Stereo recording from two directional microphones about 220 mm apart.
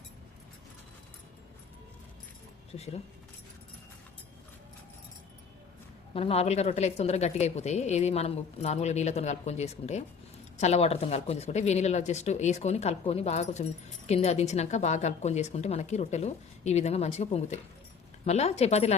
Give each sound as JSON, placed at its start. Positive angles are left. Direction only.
{"t": 2.7, "sound": "a woman's voice", "side_deg": 30}
{"t": 6.1, "sound": "a woman's voice", "side_deg": 25}